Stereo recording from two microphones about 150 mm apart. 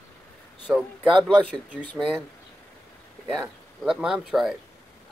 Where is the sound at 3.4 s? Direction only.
5° right (ahead or behind).